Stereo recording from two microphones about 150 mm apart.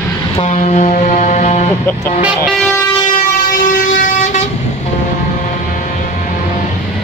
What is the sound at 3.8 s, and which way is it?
Vehicle, 60° left (ahead or behind).